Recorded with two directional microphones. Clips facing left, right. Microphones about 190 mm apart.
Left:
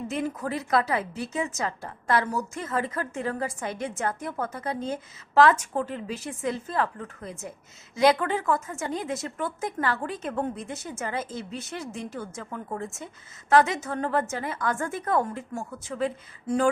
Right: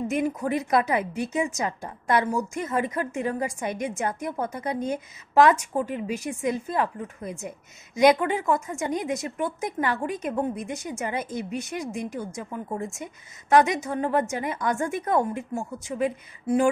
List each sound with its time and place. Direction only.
0.1 s a woman's voice: 15° right (ahead or behind)